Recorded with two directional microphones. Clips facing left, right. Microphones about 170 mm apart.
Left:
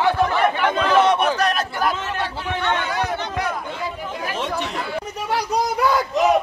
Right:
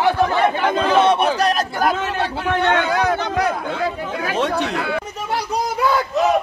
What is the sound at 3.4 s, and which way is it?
Speech, 80° right.